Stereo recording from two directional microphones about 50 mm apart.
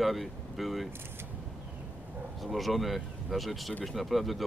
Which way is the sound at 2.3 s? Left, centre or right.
Centre.